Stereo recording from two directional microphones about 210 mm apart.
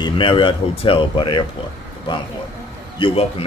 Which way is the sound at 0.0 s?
25° left (ahead or behind).